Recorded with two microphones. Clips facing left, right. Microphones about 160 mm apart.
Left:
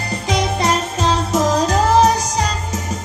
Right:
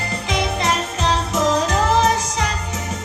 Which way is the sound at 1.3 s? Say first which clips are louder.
Left 3 dB; 40° left (ahead or behind).